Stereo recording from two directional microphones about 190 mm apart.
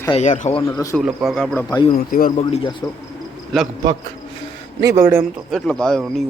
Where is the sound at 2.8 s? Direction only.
15° left (ahead or behind).